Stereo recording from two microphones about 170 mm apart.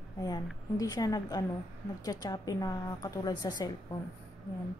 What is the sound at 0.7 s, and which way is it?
A woman's voice, 20° left (ahead or behind).